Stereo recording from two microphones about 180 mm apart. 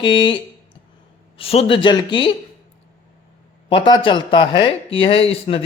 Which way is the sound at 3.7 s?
30° left (ahead or behind).